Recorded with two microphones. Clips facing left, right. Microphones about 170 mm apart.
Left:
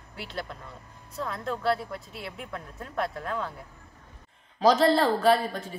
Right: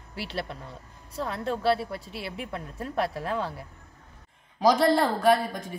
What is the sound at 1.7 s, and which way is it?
Speech, 75° right (ahead or behind).